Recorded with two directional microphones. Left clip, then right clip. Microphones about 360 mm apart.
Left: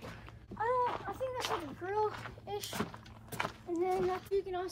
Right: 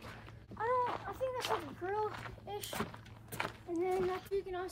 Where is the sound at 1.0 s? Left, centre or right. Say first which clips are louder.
Even; left.